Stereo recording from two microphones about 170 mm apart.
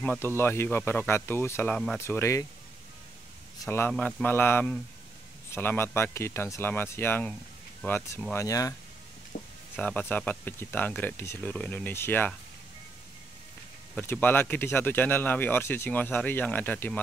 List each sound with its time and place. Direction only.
0.0 s speech: 10° left (ahead or behind)
3.6 s speech: 15° left (ahead or behind)
9.3 s a sound: 45° left (ahead or behind)
9.8 s speech: 10° left (ahead or behind)
13.9 s speech: 10° left (ahead or behind)